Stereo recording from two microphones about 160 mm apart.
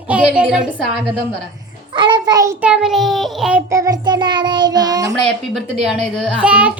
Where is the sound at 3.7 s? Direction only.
20° right (ahead or behind).